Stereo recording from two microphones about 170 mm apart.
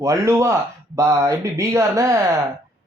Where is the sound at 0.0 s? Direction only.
20° right (ahead or behind).